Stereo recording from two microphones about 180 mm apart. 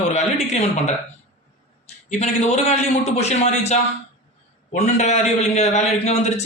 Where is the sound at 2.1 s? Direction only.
40° left (ahead or behind).